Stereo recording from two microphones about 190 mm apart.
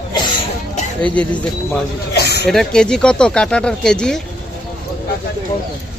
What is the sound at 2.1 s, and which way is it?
Speech, 55° left (ahead or behind).